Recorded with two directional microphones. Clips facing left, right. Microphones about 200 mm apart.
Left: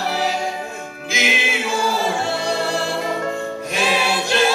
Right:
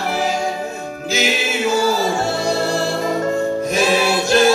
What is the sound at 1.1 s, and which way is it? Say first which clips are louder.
Music: right 3 dB; 40° right (ahead or behind).